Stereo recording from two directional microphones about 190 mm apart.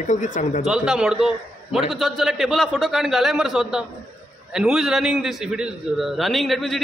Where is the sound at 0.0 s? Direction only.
40° left (ahead or behind).